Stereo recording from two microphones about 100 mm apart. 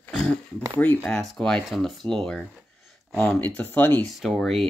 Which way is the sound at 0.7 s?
15° left (ahead or behind).